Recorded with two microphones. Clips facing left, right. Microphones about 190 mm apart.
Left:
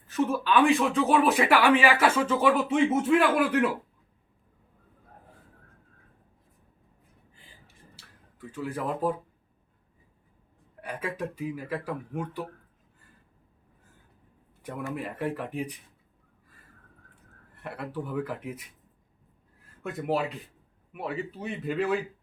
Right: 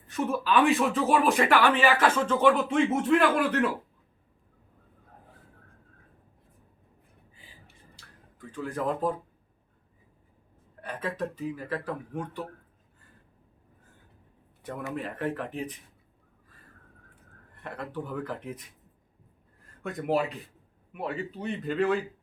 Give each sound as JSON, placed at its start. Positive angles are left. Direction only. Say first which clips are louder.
{"t": 0.1, "sound": "speech", "louder": "left 1 dB", "side_deg": 0}
{"t": 7.9, "sound": "a sound", "louder": "even", "side_deg": 5}
{"t": 10.8, "sound": "speech", "louder": "right 1 dB", "side_deg": 10}
{"t": 14.9, "sound": "speech", "louder": "right 1 dB", "side_deg": 10}
{"t": 17.6, "sound": "speech", "louder": "left 1 dB", "side_deg": 5}
{"t": 19.8, "sound": "speech", "louder": "right 1 dB", "side_deg": 5}